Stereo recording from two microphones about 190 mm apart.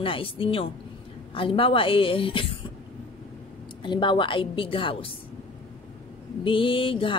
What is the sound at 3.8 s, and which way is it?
Speech, 25° left (ahead or behind).